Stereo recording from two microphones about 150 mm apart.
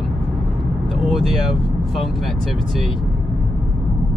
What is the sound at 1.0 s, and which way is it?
Speech, centre (ahead or behind).